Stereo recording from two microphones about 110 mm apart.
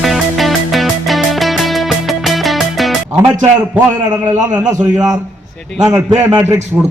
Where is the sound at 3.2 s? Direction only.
25° right (ahead or behind).